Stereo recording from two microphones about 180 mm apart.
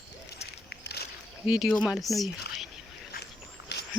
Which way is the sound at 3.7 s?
70° left (ahead or behind).